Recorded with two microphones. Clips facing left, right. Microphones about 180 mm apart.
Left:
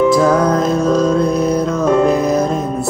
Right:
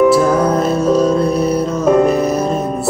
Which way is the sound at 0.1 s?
5° right (ahead or behind).